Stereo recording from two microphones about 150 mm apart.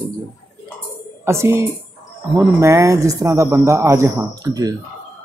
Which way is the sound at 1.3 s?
20° right (ahead or behind).